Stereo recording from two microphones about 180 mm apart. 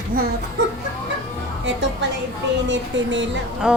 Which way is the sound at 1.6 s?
85° right.